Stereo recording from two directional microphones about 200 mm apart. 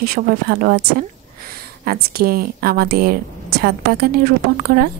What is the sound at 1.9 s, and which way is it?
A woman's voice, 50° right (ahead or behind).